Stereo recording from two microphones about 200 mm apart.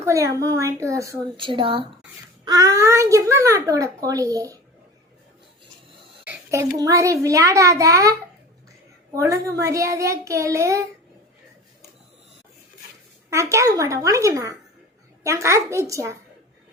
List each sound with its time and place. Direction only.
0.0 s a child's voice: 15° right (ahead or behind)
6.2 s a child's voice: 15° right (ahead or behind)
9.1 s a child's voice: 15° right (ahead or behind)
13.3 s a child's voice: 15° right (ahead or behind)